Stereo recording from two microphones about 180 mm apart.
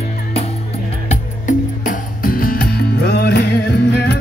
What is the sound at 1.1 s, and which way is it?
Music, 45° left (ahead or behind).